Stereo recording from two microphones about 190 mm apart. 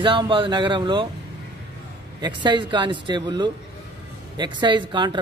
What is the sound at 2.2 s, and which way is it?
Speech, 25° right (ahead or behind).